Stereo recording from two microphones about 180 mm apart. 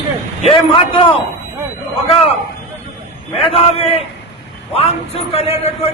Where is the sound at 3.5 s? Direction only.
35° left (ahead or behind).